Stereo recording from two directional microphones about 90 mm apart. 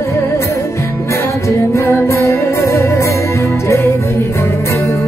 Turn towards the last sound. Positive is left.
turn(degrees=30)  # may be behind; listen again after turning